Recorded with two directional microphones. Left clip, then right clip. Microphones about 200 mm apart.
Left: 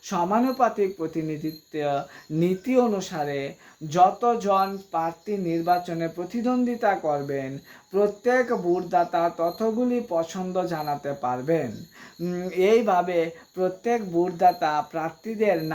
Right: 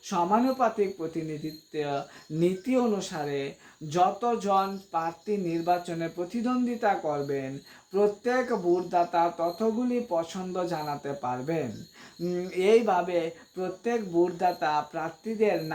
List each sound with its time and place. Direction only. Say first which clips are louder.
0.1 s speech: left 1 dB; 25° left (ahead or behind)